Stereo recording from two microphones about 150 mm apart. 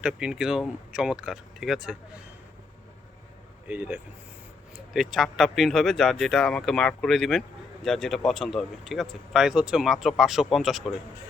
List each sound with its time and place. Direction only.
0.0 s speech: 5° right (ahead or behind)
3.7 s speech: 10° right (ahead or behind)
4.9 s speech: centre (ahead or behind)